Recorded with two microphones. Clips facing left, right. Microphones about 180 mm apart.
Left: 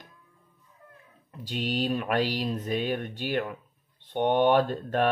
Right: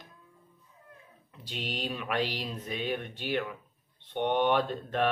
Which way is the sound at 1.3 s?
45° left (ahead or behind).